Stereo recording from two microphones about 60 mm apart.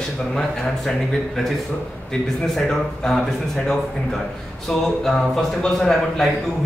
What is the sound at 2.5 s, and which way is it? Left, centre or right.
A man's voice, centre.